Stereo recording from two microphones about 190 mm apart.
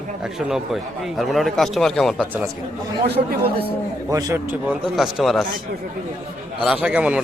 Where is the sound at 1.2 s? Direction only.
Centre (ahead or behind).